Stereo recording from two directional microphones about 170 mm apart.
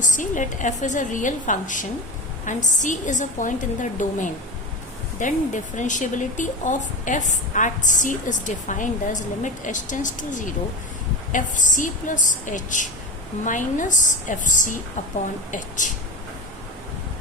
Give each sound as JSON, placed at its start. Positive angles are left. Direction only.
{"t": 0.0, "sound": "speech", "side_deg": 50}